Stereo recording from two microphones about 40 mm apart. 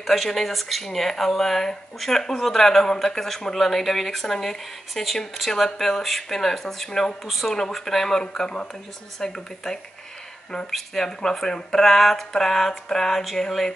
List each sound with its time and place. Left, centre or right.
0.0 s speech: centre
11.1 s speech: centre